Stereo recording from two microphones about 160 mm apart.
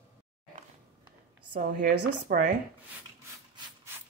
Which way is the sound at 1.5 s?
70° right (ahead or behind).